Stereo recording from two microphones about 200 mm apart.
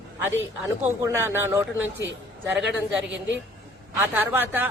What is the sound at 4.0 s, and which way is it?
Speech, 10° right (ahead or behind).